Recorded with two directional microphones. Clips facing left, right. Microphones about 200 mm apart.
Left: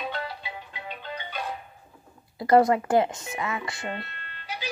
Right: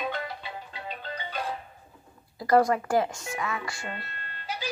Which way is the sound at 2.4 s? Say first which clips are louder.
Left 3 dB; 25° left (ahead or behind).